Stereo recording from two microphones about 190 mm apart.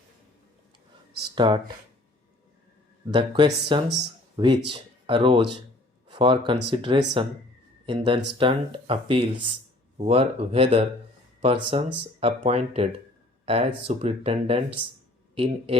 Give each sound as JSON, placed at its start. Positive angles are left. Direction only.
{"t": 1.4, "sound": "speech", "side_deg": -25}
{"t": 3.1, "sound": "speech", "side_deg": -25}